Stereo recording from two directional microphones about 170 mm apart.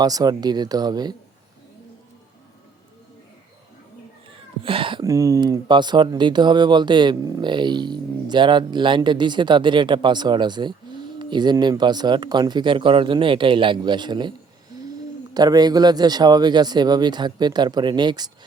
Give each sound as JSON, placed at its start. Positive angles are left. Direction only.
{"t": 0.0, "sound": "speech", "side_deg": -20}
{"t": 4.6, "sound": "cat", "side_deg": -30}
{"t": 5.0, "sound": "speech", "side_deg": -20}